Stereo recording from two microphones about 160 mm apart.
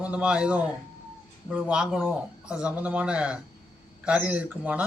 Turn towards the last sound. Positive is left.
turn(degrees=-10)  # may be behind; listen again after turning